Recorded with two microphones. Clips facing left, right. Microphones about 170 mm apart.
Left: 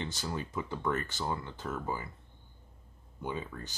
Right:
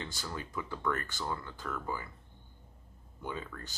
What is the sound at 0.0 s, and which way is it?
Speech, 20° left (ahead or behind).